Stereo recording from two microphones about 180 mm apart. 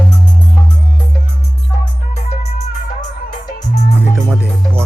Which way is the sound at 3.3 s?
40° left (ahead or behind).